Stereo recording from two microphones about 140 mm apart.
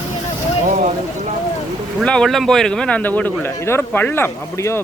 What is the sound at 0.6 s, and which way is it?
Speech, 65° right (ahead or behind).